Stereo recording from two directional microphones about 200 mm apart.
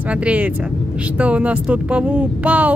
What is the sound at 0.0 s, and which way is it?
Speech, 5° right (ahead or behind).